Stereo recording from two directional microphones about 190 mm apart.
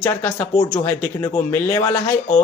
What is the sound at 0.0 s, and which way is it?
Speech, 10° left (ahead or behind).